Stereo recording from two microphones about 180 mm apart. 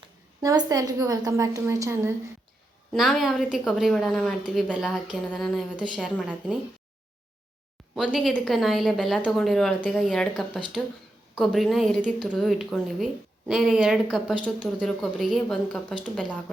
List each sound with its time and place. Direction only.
0.0 s a woman's voice: 20° right (ahead or behind)
2.9 s a woman's voice: centre (ahead or behind)
7.9 s a woman's voice: centre (ahead or behind)